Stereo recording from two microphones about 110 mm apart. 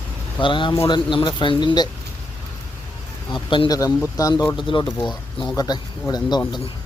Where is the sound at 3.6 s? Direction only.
30° left (ahead or behind).